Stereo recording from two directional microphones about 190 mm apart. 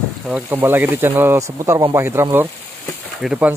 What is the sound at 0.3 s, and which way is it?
Speech, 10° right (ahead or behind).